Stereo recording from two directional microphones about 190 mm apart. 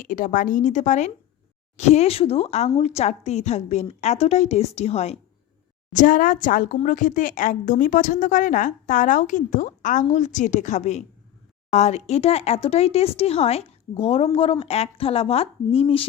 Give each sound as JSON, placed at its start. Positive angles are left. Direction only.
{"t": 0.0, "sound": "speech", "side_deg": 45}
{"t": 5.9, "sound": "speech", "side_deg": 45}